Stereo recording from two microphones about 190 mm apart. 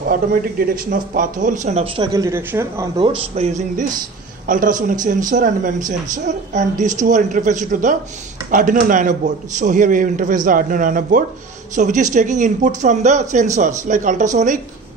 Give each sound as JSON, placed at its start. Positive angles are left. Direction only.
{"t": 0.0, "sound": "a woman's voice", "side_deg": -50}
{"t": 2.0, "sound": "speech", "side_deg": -15}
{"t": 3.0, "sound": "a woman's voice", "side_deg": -30}